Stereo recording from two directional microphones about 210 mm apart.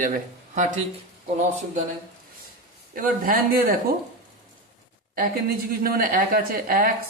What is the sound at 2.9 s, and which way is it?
Speech, 40° right (ahead or behind).